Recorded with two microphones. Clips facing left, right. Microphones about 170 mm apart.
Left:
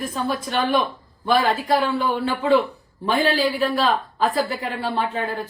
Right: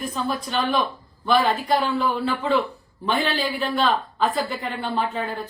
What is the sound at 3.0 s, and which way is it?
Speech, 35° left (ahead or behind).